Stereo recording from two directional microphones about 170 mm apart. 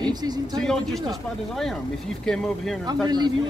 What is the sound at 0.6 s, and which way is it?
Speech, 5° left (ahead or behind).